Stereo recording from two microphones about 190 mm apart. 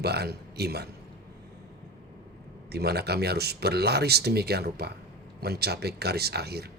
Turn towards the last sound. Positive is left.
turn(degrees=-60)  # may be behind; listen again after turning